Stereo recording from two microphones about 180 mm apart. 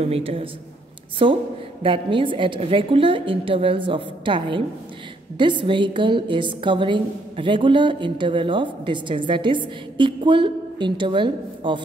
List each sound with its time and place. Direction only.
0.0 s a woman's voice: 35° right (ahead or behind)